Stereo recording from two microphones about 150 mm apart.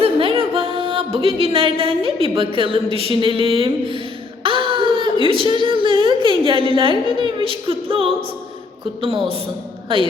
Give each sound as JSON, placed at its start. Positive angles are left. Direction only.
{"t": 0.0, "sound": "music", "side_deg": -40}
{"t": 1.4, "sound": "a woman's voice", "side_deg": -40}
{"t": 4.4, "sound": "crying", "side_deg": -35}
{"t": 5.2, "sound": "a woman's voice", "side_deg": -35}
{"t": 7.2, "sound": "a capella", "side_deg": -35}
{"t": 9.9, "sound": "a woman's voice", "side_deg": -35}